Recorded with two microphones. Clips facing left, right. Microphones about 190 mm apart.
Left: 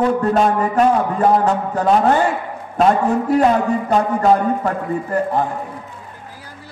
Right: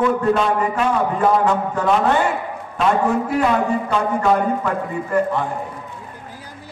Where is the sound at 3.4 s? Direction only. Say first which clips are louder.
Left 3 dB; 40° left (ahead or behind).